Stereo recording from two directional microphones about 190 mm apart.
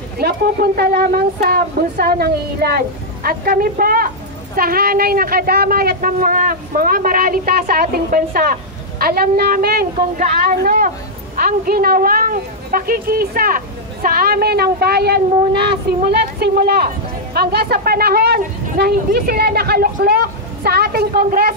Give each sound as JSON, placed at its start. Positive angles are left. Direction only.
{"t": 0.2, "sound": "a woman's voice", "side_deg": -55}
{"t": 15.5, "sound": "speech", "side_deg": -25}
{"t": 16.0, "sound": "a woman's voice", "side_deg": -55}